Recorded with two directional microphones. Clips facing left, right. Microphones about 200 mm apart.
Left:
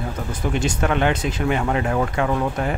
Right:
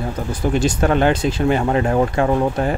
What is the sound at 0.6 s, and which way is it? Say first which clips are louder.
Speech: right 4 dB; 35° right (ahead or behind).